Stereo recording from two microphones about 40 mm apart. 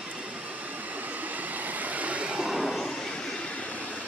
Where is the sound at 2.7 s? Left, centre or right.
Centre.